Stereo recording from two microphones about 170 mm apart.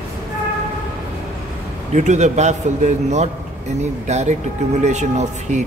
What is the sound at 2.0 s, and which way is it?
A man's voice, 45° right (ahead or behind).